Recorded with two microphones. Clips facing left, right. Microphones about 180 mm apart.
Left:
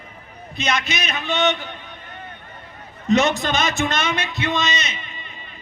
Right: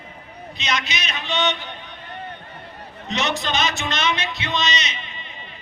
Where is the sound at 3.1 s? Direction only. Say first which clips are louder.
Left 7 dB; 50° left (ahead or behind).